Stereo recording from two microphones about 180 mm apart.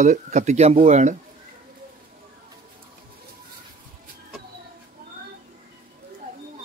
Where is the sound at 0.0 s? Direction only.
40° right (ahead or behind).